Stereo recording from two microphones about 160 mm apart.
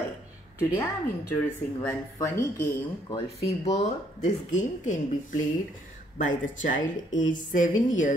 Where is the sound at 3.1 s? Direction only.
40° left (ahead or behind).